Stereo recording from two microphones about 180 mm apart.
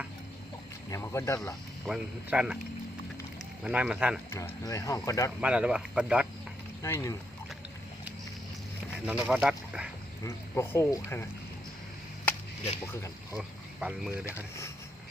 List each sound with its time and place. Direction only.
0.9 s speech: 15° left (ahead or behind)
1.8 s speech: 5° right (ahead or behind)
3.6 s speech: 5° right (ahead or behind)
4.3 s speech: 15° left (ahead or behind)
5.4 s speech: 5° right (ahead or behind)
6.8 s speech: 15° left (ahead or behind)
9.0 s speech: 5° right (ahead or behind)
10.2 s speech: 15° left (ahead or behind)
12.8 s speech: 15° left (ahead or behind)
13.3 s a sound: 5° right (ahead or behind)